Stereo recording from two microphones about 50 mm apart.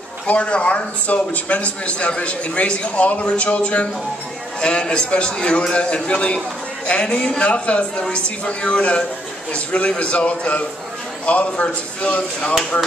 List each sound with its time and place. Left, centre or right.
0.3 s a man's voice: left